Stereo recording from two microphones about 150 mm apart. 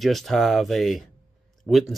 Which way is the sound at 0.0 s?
Centre (ahead or behind).